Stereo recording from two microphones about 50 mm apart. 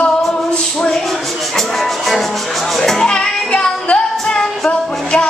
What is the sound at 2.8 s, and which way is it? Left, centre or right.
Music, centre.